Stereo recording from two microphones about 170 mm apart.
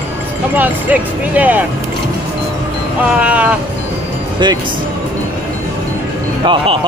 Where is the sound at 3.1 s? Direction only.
10° right (ahead or behind).